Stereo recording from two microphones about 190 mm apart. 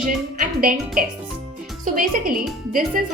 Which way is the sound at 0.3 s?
45° right (ahead or behind).